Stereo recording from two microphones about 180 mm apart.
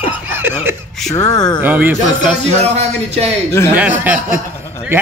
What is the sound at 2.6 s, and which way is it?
Speech, 35° right (ahead or behind).